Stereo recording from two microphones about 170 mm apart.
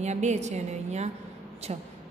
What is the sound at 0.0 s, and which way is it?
A woman's voice, 40° right (ahead or behind).